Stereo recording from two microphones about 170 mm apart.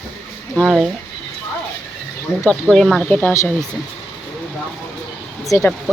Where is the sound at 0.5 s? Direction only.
Centre (ahead or behind).